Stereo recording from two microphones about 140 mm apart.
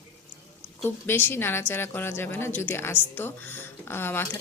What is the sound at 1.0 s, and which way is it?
A woman's voice, 15° left (ahead or behind).